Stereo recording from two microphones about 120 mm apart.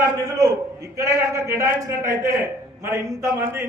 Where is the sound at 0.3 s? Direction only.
25° right (ahead or behind).